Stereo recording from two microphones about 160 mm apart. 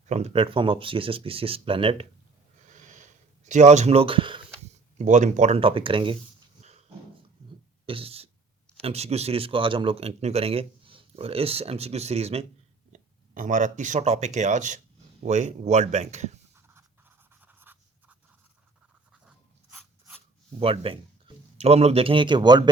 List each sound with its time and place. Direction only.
0.1 s speech: 45° right (ahead or behind)
2.6 s a sound: 50° right (ahead or behind); by 4.4 s 30° right (ahead or behind)
4.9 s speech: 50° right (ahead or behind)
5.5 s speech: 35° right (ahead or behind)
6.6 s dog: 45° right (ahead or behind)
7.9 s a sound: 35° right (ahead or behind)
8.8 s speech: 40° right (ahead or behind)
12.9 s speech: 55° right (ahead or behind)
16.6 s writing: 15° right (ahead or behind)
19.7 s writing: centre (ahead or behind)
20.6 s a man's voice: 35° right (ahead or behind)